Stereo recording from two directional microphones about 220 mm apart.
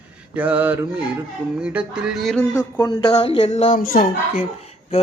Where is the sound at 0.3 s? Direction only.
5° right (ahead or behind).